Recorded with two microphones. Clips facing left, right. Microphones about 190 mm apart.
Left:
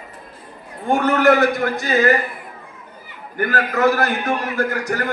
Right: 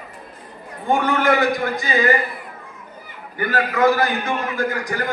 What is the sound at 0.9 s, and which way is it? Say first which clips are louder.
A man's voice: left 3 dB; 45° left (ahead or behind).